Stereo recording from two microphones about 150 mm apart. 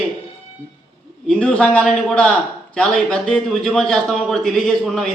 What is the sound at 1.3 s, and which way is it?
A man's voice, 5° left (ahead or behind).